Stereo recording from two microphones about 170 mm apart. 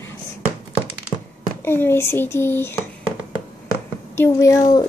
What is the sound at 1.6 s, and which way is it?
A woman's voice, 15° left (ahead or behind).